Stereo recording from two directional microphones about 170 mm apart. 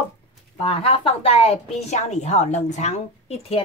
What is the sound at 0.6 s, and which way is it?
A woman's voice, 35° left (ahead or behind).